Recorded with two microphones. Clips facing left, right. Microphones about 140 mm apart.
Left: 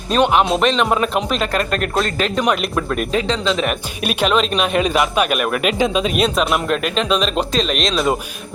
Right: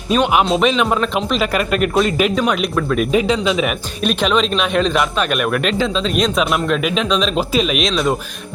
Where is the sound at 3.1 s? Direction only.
10° right (ahead or behind).